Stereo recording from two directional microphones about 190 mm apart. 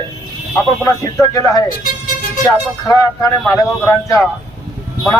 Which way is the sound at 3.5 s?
15° left (ahead or behind).